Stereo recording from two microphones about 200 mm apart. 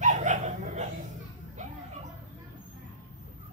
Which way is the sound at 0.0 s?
40° right (ahead or behind).